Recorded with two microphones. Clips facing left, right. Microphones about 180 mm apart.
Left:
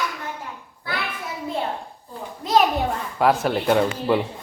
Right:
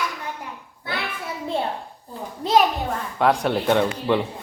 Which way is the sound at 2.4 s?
30° right (ahead or behind).